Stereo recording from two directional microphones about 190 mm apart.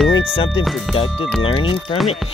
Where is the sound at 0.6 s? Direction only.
Centre (ahead or behind).